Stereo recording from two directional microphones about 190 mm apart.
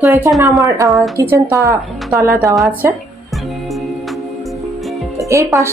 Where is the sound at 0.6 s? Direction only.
15° right (ahead or behind).